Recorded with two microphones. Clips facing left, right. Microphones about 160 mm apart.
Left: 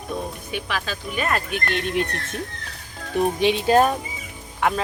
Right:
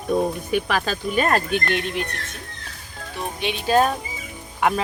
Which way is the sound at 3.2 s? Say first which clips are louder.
Left 10 dB; 55° left (ahead or behind).